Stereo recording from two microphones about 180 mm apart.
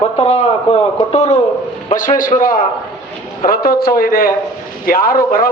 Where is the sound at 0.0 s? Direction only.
35° left (ahead or behind).